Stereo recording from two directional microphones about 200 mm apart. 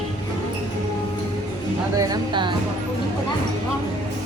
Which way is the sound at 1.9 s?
20° right (ahead or behind).